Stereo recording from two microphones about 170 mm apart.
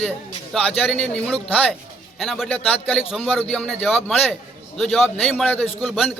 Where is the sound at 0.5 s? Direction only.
Centre (ahead or behind).